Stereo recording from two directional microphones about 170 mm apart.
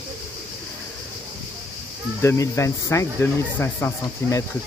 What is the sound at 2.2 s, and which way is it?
Speech, 15° left (ahead or behind).